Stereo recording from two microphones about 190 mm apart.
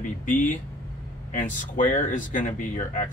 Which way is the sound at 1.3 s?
45° left (ahead or behind).